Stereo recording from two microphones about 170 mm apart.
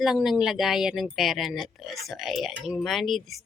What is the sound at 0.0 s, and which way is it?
Speech, centre (ahead or behind).